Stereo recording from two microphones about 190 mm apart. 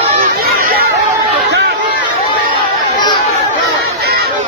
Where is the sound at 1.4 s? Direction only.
65° right (ahead or behind).